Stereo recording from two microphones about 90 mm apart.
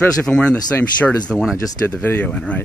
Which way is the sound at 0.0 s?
15° left (ahead or behind).